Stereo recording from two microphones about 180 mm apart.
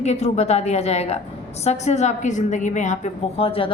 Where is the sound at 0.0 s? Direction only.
35° left (ahead or behind).